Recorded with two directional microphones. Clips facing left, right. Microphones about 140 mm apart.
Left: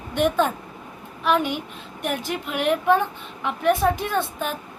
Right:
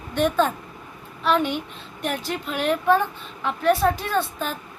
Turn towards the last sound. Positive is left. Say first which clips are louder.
# even
turn(degrees=15)  # may be behind; listen again after turning